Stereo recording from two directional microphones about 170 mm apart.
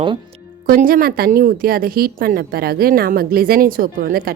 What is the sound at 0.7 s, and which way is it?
Speech, 55° right (ahead or behind).